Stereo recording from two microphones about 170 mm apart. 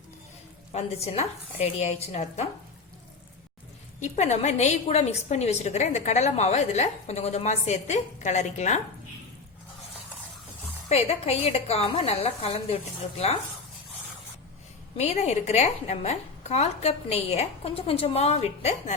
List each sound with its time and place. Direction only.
0.7 s a woman's voice: 40° left (ahead or behind)
4.0 s a woman's voice: 40° left (ahead or behind)
10.8 s a woman's voice: 35° left (ahead or behind)
14.9 s a woman's voice: 40° left (ahead or behind)